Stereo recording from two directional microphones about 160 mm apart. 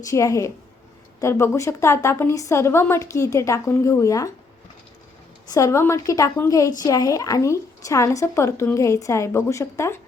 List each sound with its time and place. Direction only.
0.0 s a woman's voice: 20° left (ahead or behind)
5.5 s a woman's voice: 20° left (ahead or behind)